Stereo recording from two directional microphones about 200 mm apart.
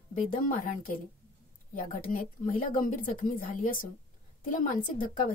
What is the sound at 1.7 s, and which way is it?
A woman's voice, 40° left (ahead or behind).